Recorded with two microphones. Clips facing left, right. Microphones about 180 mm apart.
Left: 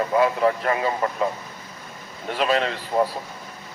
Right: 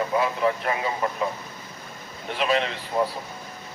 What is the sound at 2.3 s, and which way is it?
Speech, 40° left (ahead or behind).